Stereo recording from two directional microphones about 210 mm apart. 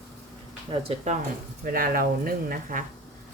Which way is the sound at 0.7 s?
25° right (ahead or behind).